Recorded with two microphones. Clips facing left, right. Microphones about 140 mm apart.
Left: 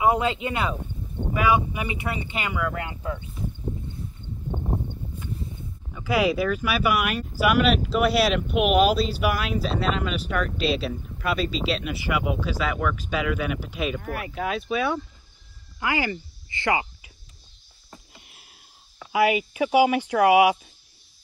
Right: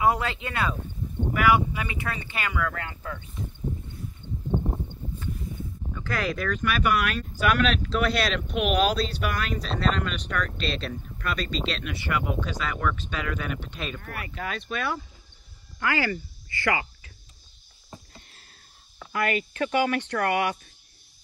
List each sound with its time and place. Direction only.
0.0 s speech: 20° left (ahead or behind)
4.5 s a sound: 15° left (ahead or behind)
5.9 s speech: 10° left (ahead or behind)
15.8 s speech: 15° left (ahead or behind)
18.1 s a sound: 10° left (ahead or behind)
18.9 s speech: 5° left (ahead or behind)